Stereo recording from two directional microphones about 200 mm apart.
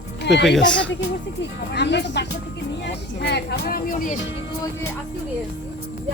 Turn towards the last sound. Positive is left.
turn(degrees=45)  # may be behind; listen again after turning